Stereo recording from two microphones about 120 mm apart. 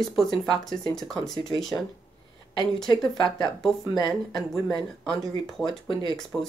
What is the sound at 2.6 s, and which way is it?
Speech, 40° left (ahead or behind).